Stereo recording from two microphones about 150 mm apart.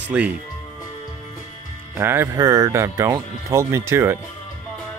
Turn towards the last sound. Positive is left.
turn(degrees=-15)  # may be behind; listen again after turning